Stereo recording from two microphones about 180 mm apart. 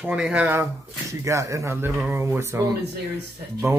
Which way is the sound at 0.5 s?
15° right (ahead or behind).